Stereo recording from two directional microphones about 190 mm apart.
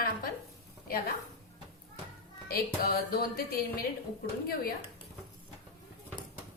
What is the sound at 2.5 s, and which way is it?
A woman's voice, 50° left (ahead or behind).